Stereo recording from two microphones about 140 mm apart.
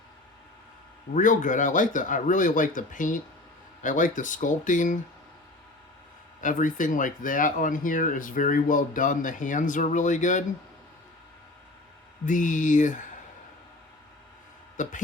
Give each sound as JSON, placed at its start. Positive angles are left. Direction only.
{"t": 1.1, "sound": "speech", "side_deg": 65}
{"t": 6.4, "sound": "speech", "side_deg": 70}
{"t": 12.2, "sound": "speech", "side_deg": 65}
{"t": 14.8, "sound": "speech", "side_deg": 65}